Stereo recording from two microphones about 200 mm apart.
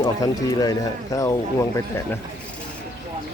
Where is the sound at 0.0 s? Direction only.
20° left (ahead or behind).